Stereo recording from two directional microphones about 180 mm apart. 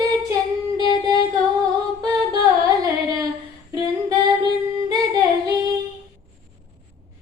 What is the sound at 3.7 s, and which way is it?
Female singing, 20° right (ahead or behind).